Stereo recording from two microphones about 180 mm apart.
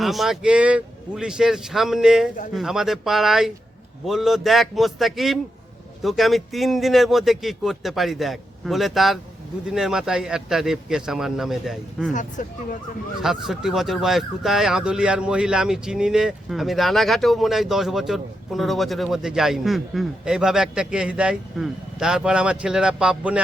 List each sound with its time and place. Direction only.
0.0 s speech: centre (ahead or behind)
12.4 s speech: 50° left (ahead or behind)
13.2 s speech: centre (ahead or behind)